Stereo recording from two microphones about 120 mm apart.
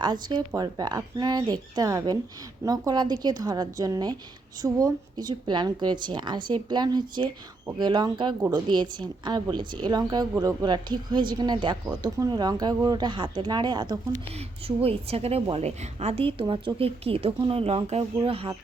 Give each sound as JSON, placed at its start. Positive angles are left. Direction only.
{"t": 0.0, "sound": "a woman's voice", "side_deg": -35}
{"t": 14.8, "sound": "a woman's voice", "side_deg": -55}
{"t": 18.2, "sound": "speech", "side_deg": -45}